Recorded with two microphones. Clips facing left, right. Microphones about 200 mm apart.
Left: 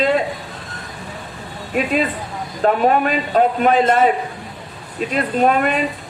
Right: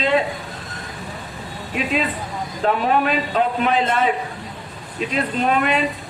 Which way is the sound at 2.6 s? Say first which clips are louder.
Left 3 dB; 45° left (ahead or behind).